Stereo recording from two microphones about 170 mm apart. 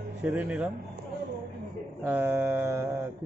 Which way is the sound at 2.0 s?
10° right (ahead or behind).